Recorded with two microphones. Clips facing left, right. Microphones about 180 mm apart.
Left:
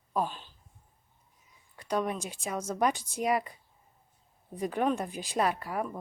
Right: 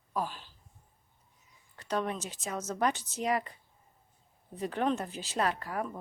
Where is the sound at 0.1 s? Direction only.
20° left (ahead or behind).